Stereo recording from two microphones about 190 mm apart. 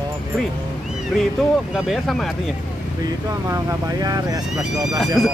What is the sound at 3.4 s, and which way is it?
Speech, 20° right (ahead or behind).